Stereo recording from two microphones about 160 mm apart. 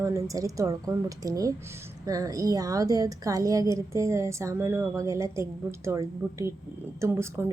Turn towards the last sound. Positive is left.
turn(degrees=-15)  # may be behind; listen again after turning